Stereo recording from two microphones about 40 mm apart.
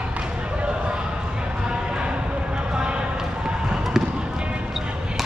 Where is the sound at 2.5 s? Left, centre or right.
Right.